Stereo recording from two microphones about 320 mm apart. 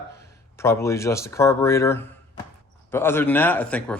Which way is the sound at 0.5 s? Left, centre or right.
Centre.